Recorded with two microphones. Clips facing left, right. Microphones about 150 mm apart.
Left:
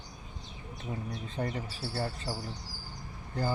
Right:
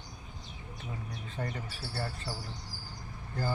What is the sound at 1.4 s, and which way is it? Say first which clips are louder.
Speech: left 3 dB; 25° left (ahead or behind).